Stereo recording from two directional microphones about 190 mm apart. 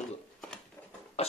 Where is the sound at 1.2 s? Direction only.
35° left (ahead or behind).